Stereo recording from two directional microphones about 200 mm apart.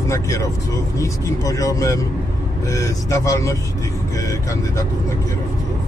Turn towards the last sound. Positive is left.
turn(degrees=15)  # may be behind; listen again after turning